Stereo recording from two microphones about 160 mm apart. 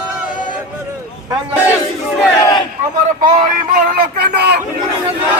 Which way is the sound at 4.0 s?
90° right.